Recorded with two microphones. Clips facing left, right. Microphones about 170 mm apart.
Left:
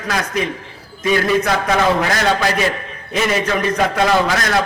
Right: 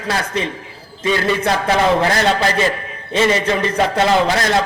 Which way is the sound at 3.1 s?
30° right (ahead or behind).